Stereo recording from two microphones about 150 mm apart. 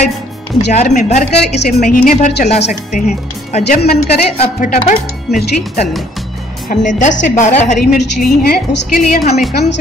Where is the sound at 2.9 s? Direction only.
55° left (ahead or behind).